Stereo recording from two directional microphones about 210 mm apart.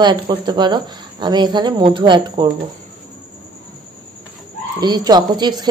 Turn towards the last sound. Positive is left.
turn(degrees=-20)  # may be behind; listen again after turning